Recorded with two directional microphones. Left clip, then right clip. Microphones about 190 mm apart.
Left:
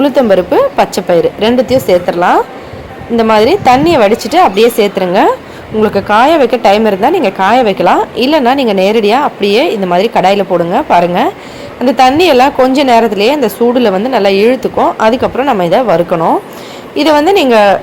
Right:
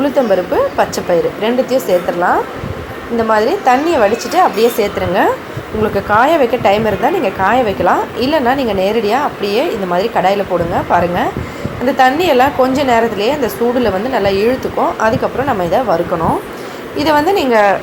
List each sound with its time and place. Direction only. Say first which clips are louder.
0.0 s speech: left 5 dB; 35° left (ahead or behind)